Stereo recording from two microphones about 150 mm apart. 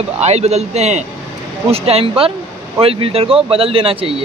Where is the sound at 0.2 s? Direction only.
45° right (ahead or behind).